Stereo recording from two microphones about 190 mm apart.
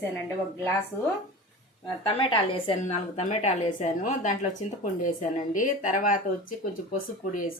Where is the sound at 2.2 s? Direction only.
30° left (ahead or behind); by 6.1 s 45° left (ahead or behind).